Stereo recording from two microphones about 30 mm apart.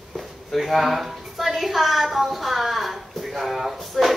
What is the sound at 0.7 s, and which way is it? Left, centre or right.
A woman's voice, centre.